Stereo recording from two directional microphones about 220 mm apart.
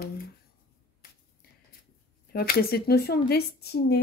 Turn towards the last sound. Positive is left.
turn(degrees=50)  # may be behind; listen again after turning